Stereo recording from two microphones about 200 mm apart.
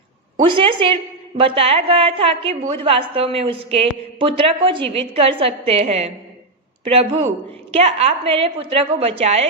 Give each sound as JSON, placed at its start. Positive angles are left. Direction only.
{"t": 0.3, "sound": "a woman's voice", "side_deg": -25}